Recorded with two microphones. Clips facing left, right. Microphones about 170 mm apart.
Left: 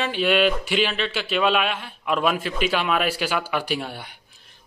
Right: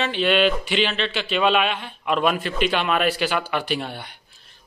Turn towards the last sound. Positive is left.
turn(degrees=10)  # may be behind; listen again after turning